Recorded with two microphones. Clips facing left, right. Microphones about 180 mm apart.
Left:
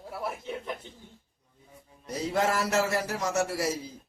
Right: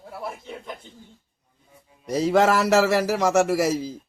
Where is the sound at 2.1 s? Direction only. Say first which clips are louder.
Right 9 dB; 90° right.